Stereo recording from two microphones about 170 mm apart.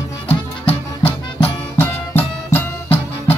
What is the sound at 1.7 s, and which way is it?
Music, 10° left (ahead or behind).